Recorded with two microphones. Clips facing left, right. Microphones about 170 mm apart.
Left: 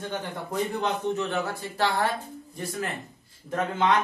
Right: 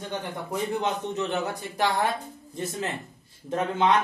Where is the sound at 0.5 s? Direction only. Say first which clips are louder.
Even; 20° right (ahead or behind).